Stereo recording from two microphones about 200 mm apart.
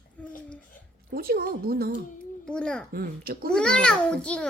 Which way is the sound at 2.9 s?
45° right (ahead or behind).